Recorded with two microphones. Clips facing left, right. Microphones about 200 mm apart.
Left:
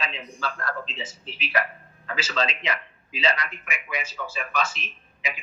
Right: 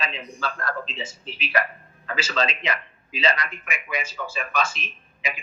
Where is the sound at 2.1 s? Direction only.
45° right (ahead or behind).